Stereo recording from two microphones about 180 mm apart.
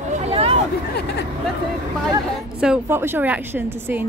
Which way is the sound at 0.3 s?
35° right (ahead or behind).